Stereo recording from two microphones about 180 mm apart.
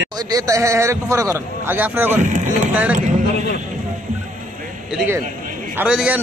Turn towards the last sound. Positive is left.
turn(degrees=-5)  # may be behind; listen again after turning